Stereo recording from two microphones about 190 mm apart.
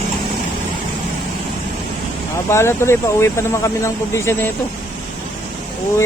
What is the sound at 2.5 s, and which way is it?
Speech, 15° left (ahead or behind).